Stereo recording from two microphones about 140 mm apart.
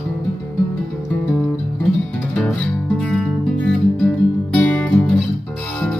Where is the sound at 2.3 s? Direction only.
10° left (ahead or behind).